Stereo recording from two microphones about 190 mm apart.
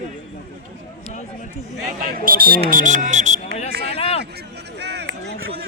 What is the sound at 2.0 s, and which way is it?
Speech, 50° right (ahead or behind).